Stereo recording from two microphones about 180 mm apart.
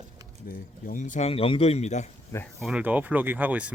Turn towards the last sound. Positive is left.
turn(degrees=-10)  # may be behind; listen again after turning